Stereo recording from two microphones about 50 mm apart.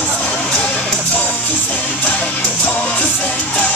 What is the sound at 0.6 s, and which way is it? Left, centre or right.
Music, left.